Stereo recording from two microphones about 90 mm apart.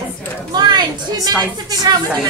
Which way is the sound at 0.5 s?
55° right (ahead or behind).